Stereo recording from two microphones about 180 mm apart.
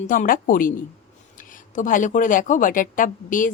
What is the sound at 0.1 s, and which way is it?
Speech, 50° left (ahead or behind).